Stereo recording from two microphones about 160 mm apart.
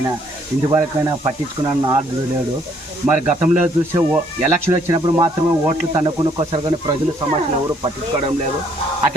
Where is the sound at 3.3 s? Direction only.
10° right (ahead or behind); by 6.9 s 30° right (ahead or behind).